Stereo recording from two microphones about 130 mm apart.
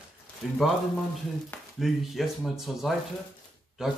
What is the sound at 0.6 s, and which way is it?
Speech, centre (ahead or behind).